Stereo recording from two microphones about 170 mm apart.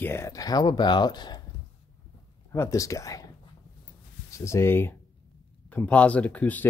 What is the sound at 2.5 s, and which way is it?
Speech, 15° left (ahead or behind).